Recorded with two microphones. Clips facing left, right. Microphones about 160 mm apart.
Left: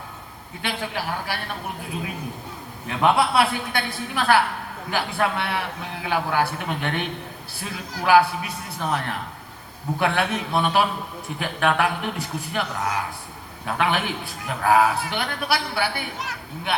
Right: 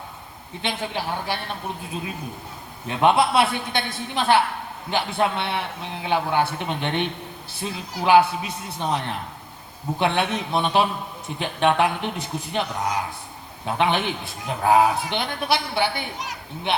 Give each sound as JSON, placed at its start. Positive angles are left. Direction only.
{"t": 0.6, "sound": "a man's voice", "side_deg": -25}
{"t": 2.8, "sound": "a man's voice", "side_deg": -25}